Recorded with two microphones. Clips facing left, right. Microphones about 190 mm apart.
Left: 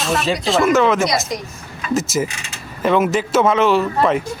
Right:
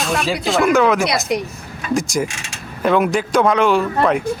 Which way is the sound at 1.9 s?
5° left (ahead or behind).